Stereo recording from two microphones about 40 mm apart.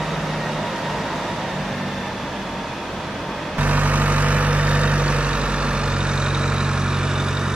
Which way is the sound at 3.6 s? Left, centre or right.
Right.